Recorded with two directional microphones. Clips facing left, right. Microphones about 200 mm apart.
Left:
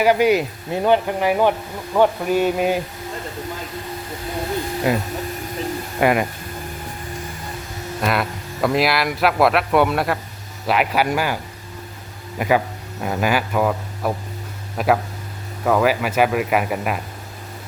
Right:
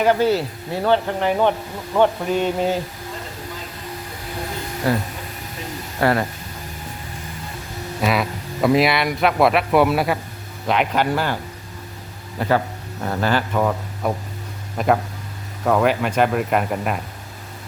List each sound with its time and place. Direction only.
0.0 s speech: 10° left (ahead or behind)
4.9 s speech: 15° left (ahead or behind)
8.0 s speech: centre (ahead or behind)
12.4 s speech: 10° left (ahead or behind)